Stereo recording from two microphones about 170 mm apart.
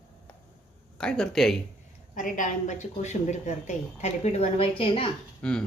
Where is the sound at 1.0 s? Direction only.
5° left (ahead or behind).